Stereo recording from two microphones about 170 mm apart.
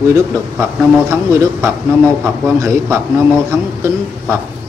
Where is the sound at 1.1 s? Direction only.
15° right (ahead or behind).